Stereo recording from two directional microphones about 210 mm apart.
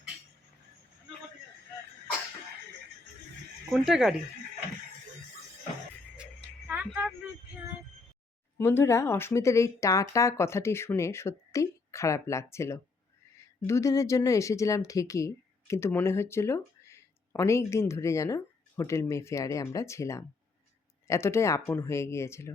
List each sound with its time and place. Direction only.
3.7 s speech: centre (ahead or behind)
6.7 s a sound: 5° right (ahead or behind)
8.5 s speech: 10° left (ahead or behind)